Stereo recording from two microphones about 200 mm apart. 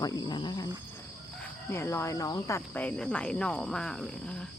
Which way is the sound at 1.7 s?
15° left (ahead or behind).